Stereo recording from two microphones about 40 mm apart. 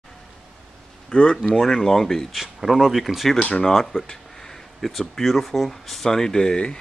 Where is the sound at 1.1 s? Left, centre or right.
Left.